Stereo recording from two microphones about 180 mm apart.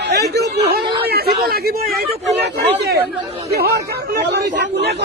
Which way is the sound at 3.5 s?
60° right (ahead or behind).